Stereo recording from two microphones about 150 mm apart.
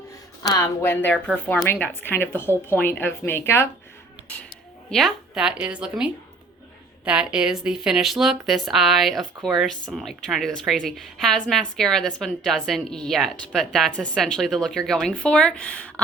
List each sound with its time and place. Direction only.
0.4 s a woman's voice: 20° left (ahead or behind)
4.9 s speech: centre (ahead or behind)